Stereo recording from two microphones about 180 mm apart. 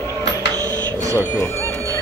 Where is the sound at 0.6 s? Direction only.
15° right (ahead or behind).